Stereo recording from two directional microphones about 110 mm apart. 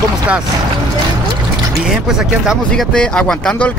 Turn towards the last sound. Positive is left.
turn(degrees=5)  # may be behind; listen again after turning